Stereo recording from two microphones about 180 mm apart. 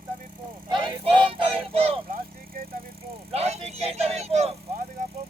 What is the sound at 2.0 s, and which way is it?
Vehicle, 55° right (ahead or behind).